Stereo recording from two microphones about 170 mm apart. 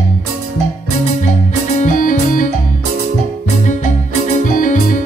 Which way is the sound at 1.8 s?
50° left (ahead or behind).